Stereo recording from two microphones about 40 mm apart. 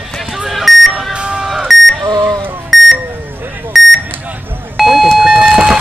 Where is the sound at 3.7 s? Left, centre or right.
Centre.